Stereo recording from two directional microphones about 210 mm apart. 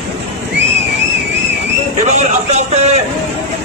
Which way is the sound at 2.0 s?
30° right (ahead or behind).